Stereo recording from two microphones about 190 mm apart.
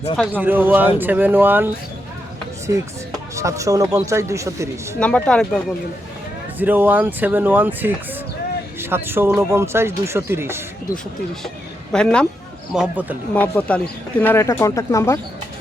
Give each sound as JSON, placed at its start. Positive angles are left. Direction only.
{"t": 0.2, "sound": "speech", "side_deg": -10}
{"t": 3.3, "sound": "speech", "side_deg": -15}
{"t": 4.9, "sound": "speech", "side_deg": 5}
{"t": 6.6, "sound": "speech", "side_deg": -10}
{"t": 11.4, "sound": "speech", "side_deg": 5}
{"t": 12.7, "sound": "speech", "side_deg": -5}
{"t": 13.3, "sound": "speech", "side_deg": 5}